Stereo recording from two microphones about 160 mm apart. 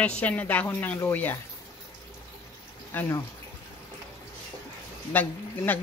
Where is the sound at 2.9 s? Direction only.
15° left (ahead or behind).